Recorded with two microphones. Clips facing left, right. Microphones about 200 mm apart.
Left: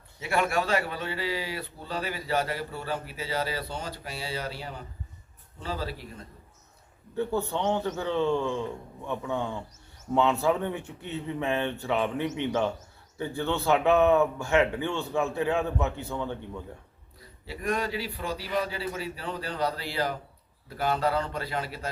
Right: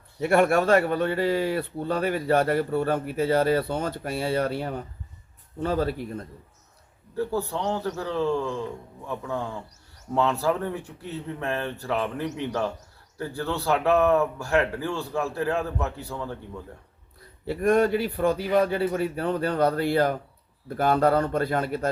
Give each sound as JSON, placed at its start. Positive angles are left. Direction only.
{"t": 0.2, "sound": "a man's voice", "side_deg": -55}
{"t": 7.2, "sound": "speech", "side_deg": 0}
{"t": 17.4, "sound": "a man's voice", "side_deg": -55}